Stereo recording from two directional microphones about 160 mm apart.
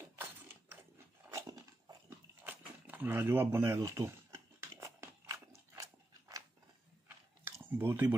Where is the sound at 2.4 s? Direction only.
10° right (ahead or behind).